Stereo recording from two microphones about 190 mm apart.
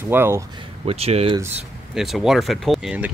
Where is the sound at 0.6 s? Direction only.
30° right (ahead or behind).